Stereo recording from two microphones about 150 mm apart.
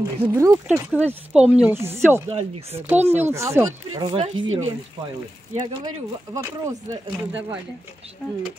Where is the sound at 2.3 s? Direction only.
45° right (ahead or behind).